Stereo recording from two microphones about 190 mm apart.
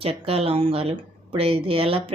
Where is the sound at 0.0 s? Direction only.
30° right (ahead or behind).